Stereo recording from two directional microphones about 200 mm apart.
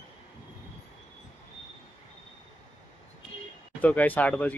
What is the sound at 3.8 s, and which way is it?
Speech, 5° left (ahead or behind).